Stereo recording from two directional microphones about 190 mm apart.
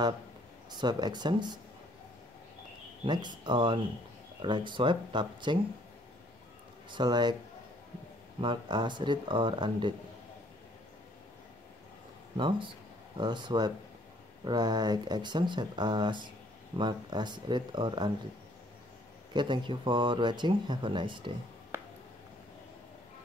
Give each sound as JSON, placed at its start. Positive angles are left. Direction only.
{"t": 0.7, "sound": "speech", "side_deg": -20}
{"t": 3.1, "sound": "speech", "side_deg": -25}
{"t": 6.9, "sound": "speech", "side_deg": -25}
{"t": 8.4, "sound": "speech", "side_deg": -25}
{"t": 12.4, "sound": "speech", "side_deg": -25}
{"t": 19.3, "sound": "speech", "side_deg": -25}